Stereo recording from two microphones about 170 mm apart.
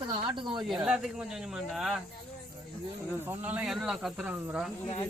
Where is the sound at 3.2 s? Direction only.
10° right (ahead or behind).